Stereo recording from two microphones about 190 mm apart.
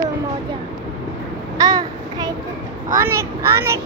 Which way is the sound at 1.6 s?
20° right (ahead or behind).